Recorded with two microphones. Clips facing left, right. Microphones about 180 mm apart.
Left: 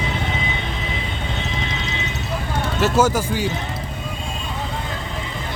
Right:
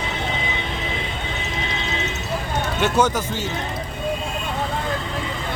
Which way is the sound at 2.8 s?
5° left (ahead or behind).